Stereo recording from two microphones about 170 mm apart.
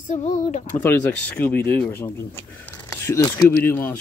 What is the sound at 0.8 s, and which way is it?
Speech, 10° left (ahead or behind).